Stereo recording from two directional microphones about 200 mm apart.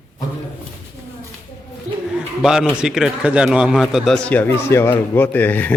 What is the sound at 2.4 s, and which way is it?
A man's voice, 5° right (ahead or behind).